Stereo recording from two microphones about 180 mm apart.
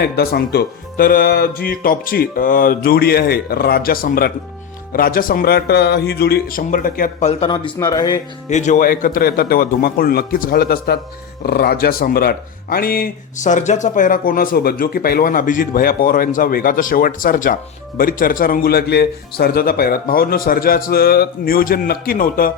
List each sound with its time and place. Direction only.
0.0 s speech: 60° left (ahead or behind); by 8.2 s 20° left (ahead or behind)
8.4 s speech: 40° left (ahead or behind)